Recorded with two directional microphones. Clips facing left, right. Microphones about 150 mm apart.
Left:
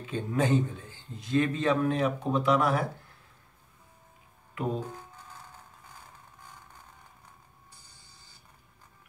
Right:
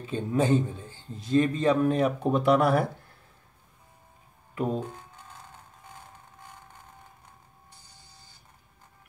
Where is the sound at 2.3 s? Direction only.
55° right (ahead or behind).